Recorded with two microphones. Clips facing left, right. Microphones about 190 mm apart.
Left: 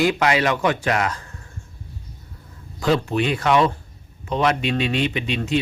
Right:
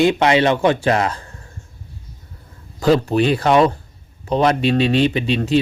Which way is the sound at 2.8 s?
35° right (ahead or behind).